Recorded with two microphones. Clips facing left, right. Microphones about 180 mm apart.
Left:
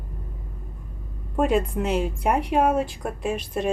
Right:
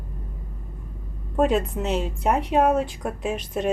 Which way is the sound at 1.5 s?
10° left (ahead or behind).